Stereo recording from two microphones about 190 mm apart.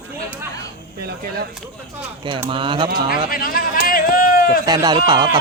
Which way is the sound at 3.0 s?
50° left (ahead or behind).